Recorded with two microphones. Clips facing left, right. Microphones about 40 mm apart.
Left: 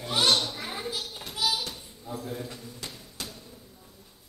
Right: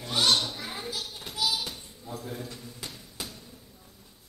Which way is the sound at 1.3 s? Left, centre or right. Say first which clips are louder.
Left 1 dB; centre.